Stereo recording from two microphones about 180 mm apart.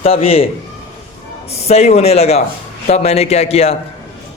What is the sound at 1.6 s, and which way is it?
A man's voice, 35° left (ahead or behind).